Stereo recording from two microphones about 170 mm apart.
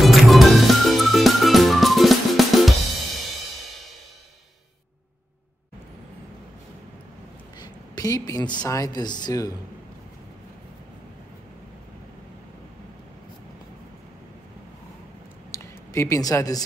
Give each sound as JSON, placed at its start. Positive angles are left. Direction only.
{"t": 0.0, "sound": "music", "side_deg": 0}
{"t": 7.5, "sound": "speech", "side_deg": 25}
{"t": 15.5, "sound": "a sound", "side_deg": 15}